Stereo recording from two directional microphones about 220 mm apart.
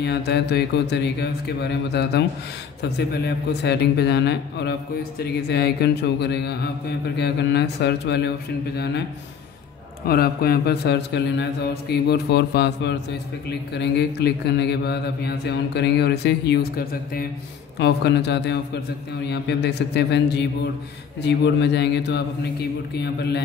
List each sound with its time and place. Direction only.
0.0 s speech: 50° left (ahead or behind)
10.0 s speech: 45° left (ahead or behind)